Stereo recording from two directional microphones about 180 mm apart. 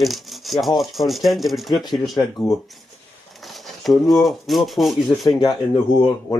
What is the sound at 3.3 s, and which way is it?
Speech, centre (ahead or behind).